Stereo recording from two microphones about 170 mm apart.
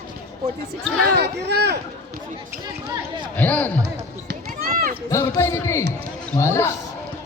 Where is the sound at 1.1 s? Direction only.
75° right (ahead or behind).